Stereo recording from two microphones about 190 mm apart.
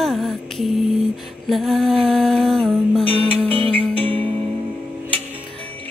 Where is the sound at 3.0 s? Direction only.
30° right (ahead or behind).